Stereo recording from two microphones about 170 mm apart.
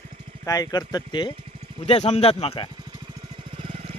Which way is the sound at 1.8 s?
40° left (ahead or behind).